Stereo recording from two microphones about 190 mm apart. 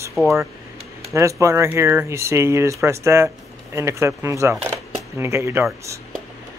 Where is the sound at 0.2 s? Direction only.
10° right (ahead or behind).